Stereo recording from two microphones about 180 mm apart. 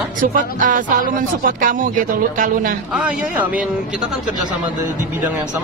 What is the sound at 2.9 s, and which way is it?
Speech, 5° right (ahead or behind).